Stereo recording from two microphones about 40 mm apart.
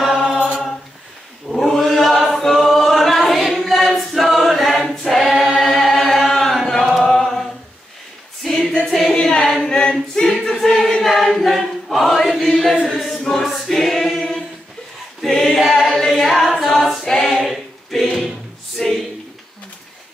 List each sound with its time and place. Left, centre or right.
0.2 s choir: centre
1.5 s chant: centre
2.2 s choir: centre
6.8 s a capella: centre
8.4 s singing: centre
9.1 s a capella: centre
9.7 s choir: left; by 14.2 s centre
15.3 s a capella: centre
15.6 s singing: centre
16.2 s choir: centre
16.8 s a capella: centre
17.1 s choir: centre
18.8 s a sound: centre